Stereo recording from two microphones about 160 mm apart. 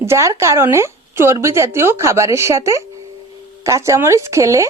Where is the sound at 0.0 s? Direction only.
15° right (ahead or behind).